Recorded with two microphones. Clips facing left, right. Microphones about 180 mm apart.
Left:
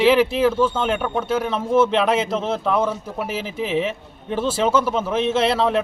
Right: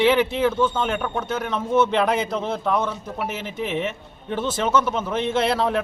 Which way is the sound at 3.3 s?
90° left.